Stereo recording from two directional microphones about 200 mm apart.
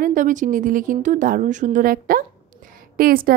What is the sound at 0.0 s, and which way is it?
A woman's voice, 40° right (ahead or behind).